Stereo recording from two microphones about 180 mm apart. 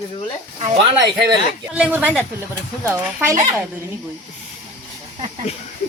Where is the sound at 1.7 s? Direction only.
5° right (ahead or behind).